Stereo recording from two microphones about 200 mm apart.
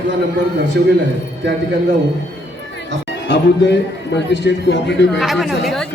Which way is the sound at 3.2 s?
60° left (ahead or behind).